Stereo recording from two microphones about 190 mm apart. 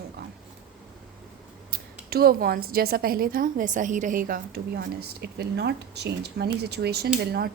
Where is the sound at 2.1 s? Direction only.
55° right (ahead or behind).